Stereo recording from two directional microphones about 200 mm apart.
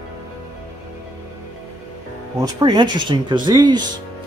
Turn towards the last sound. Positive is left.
turn(degrees=-20)  # may be behind; listen again after turning